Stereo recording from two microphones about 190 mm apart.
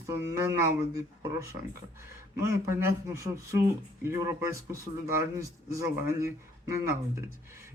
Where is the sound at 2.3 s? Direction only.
15° right (ahead or behind).